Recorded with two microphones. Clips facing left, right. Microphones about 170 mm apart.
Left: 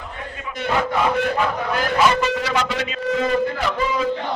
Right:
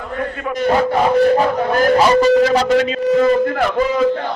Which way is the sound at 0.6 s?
40° right (ahead or behind).